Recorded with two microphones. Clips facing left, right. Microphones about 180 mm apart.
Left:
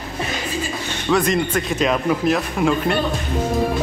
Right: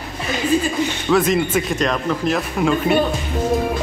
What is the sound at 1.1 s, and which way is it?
Speech, 5° right (ahead or behind).